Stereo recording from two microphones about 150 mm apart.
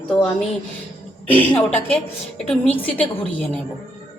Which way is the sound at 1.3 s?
10° left (ahead or behind).